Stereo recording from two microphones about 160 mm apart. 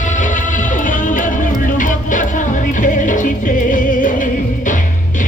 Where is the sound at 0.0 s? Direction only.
50° left (ahead or behind).